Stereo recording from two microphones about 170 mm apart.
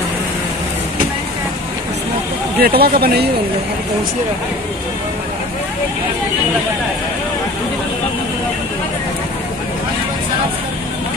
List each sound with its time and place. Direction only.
2.6 s speech: 65° right (ahead or behind)